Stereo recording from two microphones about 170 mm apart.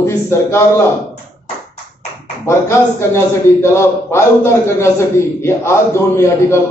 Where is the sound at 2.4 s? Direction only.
15° left (ahead or behind).